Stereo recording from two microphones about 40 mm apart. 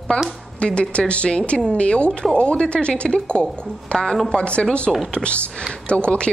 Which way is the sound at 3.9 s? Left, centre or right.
Centre.